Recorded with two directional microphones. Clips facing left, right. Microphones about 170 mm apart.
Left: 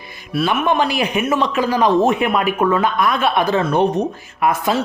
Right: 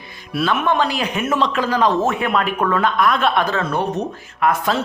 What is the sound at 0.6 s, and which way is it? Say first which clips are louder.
Speech: left 2 dB; 15° left (ahead or behind).